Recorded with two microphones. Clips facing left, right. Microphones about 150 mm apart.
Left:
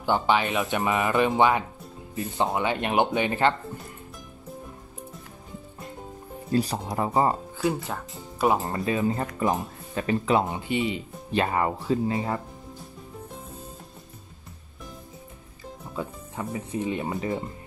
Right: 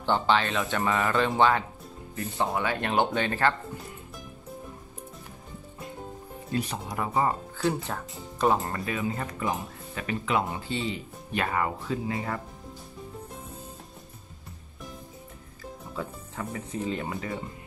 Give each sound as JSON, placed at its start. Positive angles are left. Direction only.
{"t": 0.0, "sound": "speech", "side_deg": 10}
{"t": 6.5, "sound": "speech", "side_deg": 35}
{"t": 7.5, "sound": "speech", "side_deg": 5}
{"t": 8.6, "sound": "speech", "side_deg": 25}
{"t": 9.0, "sound": "speech", "side_deg": 40}
{"t": 16.0, "sound": "speech", "side_deg": 20}